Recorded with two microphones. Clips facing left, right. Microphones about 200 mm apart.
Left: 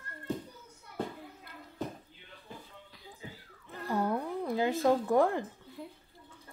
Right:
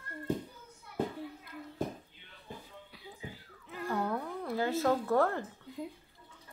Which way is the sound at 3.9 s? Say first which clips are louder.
Left 3 dB; 15° left (ahead or behind).